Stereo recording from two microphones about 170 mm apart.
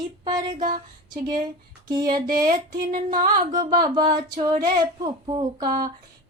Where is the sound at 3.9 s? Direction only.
25° right (ahead or behind).